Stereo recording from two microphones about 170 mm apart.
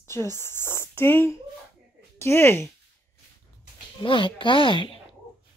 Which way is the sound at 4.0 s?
30° left (ahead or behind).